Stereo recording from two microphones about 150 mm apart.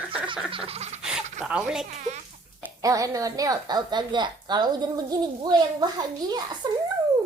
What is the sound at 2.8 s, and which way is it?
A woman's voice, 20° right (ahead or behind).